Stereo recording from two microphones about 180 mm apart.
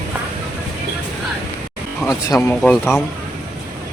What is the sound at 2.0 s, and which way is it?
Speech, 15° left (ahead or behind).